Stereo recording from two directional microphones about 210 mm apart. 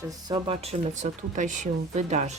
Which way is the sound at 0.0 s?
20° right (ahead or behind).